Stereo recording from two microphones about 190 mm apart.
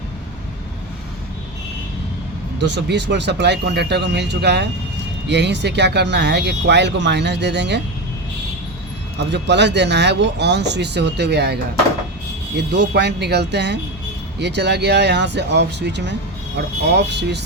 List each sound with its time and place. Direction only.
2.6 s speech: 65° right (ahead or behind)
9.3 s speech: 65° right (ahead or behind)